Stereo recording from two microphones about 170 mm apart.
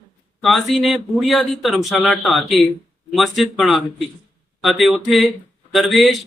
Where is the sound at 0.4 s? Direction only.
Centre (ahead or behind).